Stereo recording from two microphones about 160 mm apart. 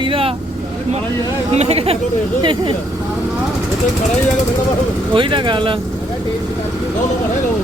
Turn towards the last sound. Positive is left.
turn(degrees=-30)  # may be behind; listen again after turning